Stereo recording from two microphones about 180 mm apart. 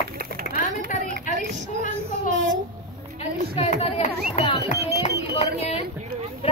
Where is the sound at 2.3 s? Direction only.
90° right.